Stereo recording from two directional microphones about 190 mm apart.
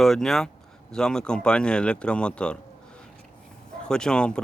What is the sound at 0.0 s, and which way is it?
Speech, centre (ahead or behind).